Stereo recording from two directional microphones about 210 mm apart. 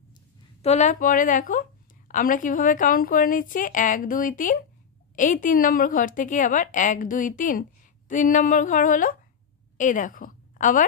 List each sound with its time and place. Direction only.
0.6 s a woman's voice: 30° left (ahead or behind)